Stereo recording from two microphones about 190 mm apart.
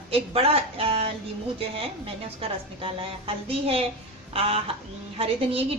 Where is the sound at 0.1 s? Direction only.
30° right (ahead or behind).